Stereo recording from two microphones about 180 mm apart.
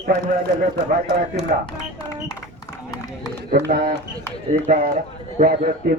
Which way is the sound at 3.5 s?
60° right (ahead or behind).